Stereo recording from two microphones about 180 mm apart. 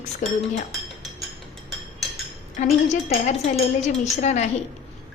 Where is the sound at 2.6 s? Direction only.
40° left (ahead or behind).